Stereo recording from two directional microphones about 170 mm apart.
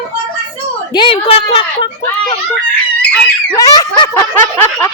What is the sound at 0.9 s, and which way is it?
Speech, 30° left (ahead or behind).